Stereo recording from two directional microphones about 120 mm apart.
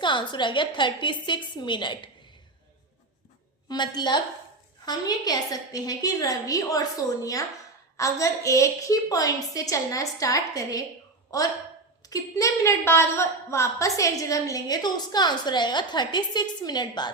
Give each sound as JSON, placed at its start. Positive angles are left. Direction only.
{"t": 0.0, "sound": "a woman's voice", "side_deg": 40}
{"t": 3.7, "sound": "a woman's voice", "side_deg": 35}
{"t": 12.0, "sound": "a woman's voice", "side_deg": 30}